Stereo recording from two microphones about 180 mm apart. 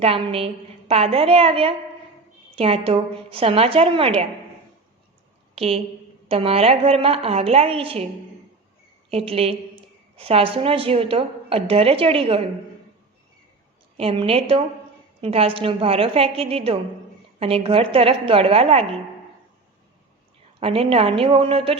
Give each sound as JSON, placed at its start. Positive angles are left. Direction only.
{"t": 0.0, "sound": "a woman's voice", "side_deg": -30}
{"t": 5.5, "sound": "a woman's voice", "side_deg": -35}
{"t": 9.0, "sound": "a woman's voice", "side_deg": -35}
{"t": 13.9, "sound": "a woman's voice", "side_deg": -30}
{"t": 20.6, "sound": "a woman's voice", "side_deg": -30}